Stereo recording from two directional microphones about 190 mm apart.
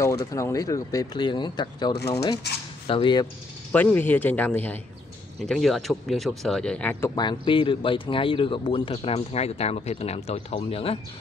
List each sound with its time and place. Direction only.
0.0 s speech: 15° left (ahead or behind)
2.9 s speech: 25° left (ahead or behind)
3.7 s speech: 10° left (ahead or behind)
7.2 s speech: 25° left (ahead or behind)